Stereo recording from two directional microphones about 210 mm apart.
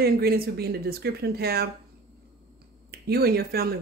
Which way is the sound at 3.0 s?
50° right (ahead or behind).